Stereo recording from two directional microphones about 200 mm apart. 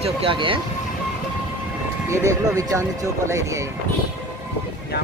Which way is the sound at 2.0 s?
15° right (ahead or behind).